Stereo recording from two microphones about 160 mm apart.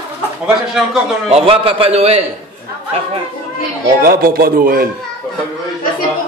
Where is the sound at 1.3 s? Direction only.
35° right (ahead or behind).